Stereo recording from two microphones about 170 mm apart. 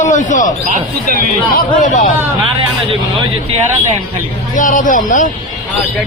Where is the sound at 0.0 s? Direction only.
45° left (ahead or behind).